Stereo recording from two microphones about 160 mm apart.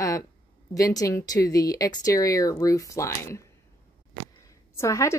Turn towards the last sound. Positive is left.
turn(degrees=20)  # may be behind; listen again after turning